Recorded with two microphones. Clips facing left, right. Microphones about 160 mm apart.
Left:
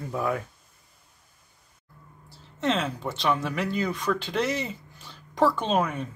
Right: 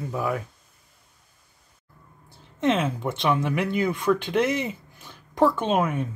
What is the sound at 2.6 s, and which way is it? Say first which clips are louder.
Speech: right 4 dB; 15° right (ahead or behind).